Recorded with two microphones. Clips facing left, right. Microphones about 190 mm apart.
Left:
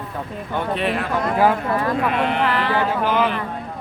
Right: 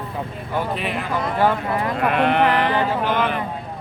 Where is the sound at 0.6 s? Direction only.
Centre (ahead or behind).